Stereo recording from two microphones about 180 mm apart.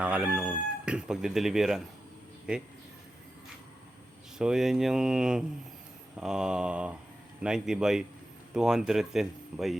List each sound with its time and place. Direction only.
0.0 s speech: 5° right (ahead or behind)
4.4 s speech: 5° right (ahead or behind)